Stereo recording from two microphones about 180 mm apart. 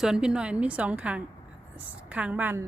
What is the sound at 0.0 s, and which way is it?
A woman's voice, 5° right (ahead or behind).